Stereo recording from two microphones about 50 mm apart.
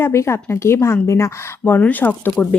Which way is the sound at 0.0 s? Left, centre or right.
Left.